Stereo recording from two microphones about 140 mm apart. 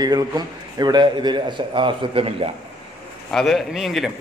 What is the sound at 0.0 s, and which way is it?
A man's voice, 30° right (ahead or behind).